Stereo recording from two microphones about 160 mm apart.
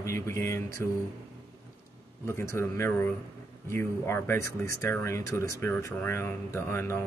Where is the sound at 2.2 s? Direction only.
15° left (ahead or behind).